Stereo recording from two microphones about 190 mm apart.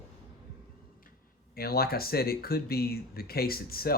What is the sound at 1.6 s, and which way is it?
Speech, 55° left (ahead or behind).